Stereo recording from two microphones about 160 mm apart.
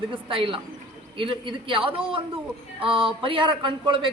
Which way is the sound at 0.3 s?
35° right (ahead or behind).